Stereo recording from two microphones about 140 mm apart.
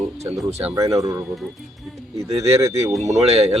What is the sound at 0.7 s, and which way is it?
Speech, 20° right (ahead or behind).